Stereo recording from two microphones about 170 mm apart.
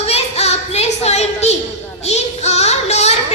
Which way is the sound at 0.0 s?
40° left (ahead or behind).